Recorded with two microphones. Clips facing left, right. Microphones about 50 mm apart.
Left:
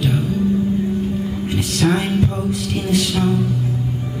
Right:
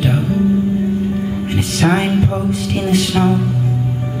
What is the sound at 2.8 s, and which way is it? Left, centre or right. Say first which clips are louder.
Speech: right 4 dB; right.